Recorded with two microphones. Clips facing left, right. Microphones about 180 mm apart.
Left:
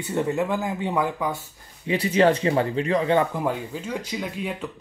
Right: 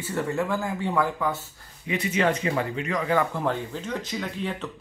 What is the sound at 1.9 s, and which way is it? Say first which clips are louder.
Speech: left 5 dB; 35° left (ahead or behind).